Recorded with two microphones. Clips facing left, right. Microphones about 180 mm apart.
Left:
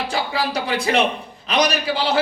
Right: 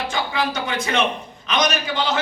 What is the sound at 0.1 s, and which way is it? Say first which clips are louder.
A man's voice: left 1 dB; 35° left (ahead or behind).